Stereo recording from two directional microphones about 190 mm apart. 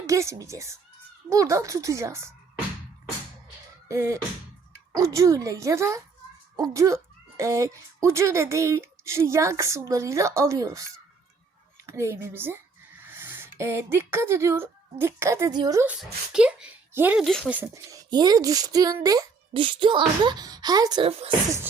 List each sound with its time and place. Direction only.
0.0 s speech: 15° right (ahead or behind)
3.8 s speech: 15° right (ahead or behind)
11.9 s a child's voice: 15° right (ahead or behind); by 17.6 s centre (ahead or behind)
17.6 s speech: 20° right (ahead or behind)